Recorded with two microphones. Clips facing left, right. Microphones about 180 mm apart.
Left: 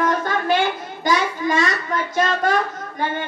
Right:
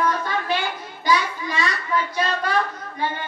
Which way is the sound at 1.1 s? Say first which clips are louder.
Left 3 dB; 45° left (ahead or behind).